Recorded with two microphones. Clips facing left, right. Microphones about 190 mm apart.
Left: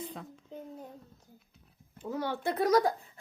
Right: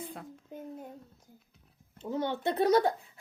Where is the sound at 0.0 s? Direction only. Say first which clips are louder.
Left 1 dB; 10° right (ahead or behind).